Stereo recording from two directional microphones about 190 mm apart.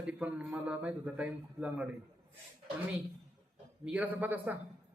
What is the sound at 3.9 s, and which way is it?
Speech, 5° right (ahead or behind).